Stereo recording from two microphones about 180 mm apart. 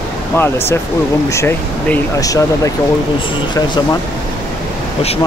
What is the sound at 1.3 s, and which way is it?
Speech, 15° left (ahead or behind).